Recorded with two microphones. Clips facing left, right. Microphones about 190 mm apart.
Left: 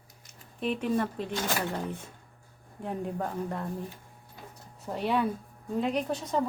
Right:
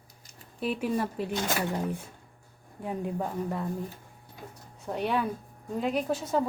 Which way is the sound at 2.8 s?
5° right (ahead or behind).